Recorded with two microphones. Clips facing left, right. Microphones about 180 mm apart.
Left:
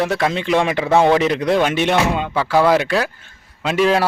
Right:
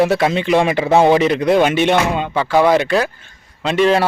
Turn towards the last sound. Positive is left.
turn(degrees=5)  # may be behind; listen again after turning